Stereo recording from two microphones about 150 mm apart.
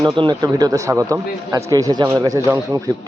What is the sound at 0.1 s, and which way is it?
A man's voice, 30° right (ahead or behind).